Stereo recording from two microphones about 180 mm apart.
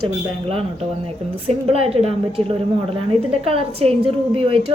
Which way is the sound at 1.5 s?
35° right (ahead or behind).